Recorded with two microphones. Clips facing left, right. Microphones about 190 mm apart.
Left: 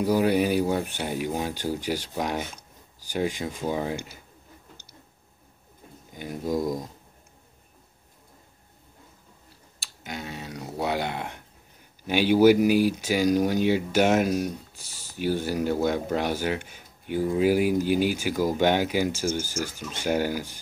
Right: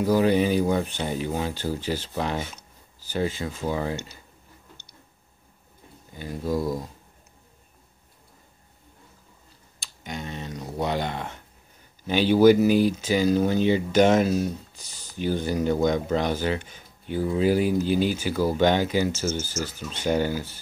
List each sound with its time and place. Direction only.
0.0 s speech: 10° left (ahead or behind)
6.1 s speech: 15° left (ahead or behind)
9.8 s speech: 5° left (ahead or behind)